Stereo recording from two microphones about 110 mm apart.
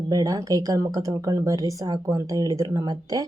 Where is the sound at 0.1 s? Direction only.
35° right (ahead or behind).